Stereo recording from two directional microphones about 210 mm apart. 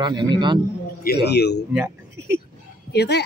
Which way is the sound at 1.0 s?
50° left (ahead or behind).